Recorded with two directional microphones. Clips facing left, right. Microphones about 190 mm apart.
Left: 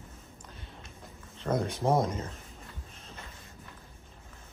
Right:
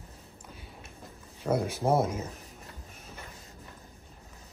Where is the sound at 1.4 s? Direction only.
5° right (ahead or behind).